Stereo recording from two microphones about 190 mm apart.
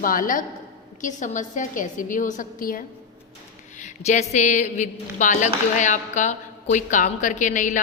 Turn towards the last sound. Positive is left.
turn(degrees=40)  # may be behind; listen again after turning